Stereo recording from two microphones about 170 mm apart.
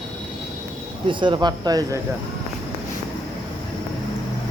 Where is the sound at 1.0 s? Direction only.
25° right (ahead or behind).